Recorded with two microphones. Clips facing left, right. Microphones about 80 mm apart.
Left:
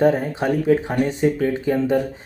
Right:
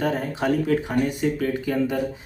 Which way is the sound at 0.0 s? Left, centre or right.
Left.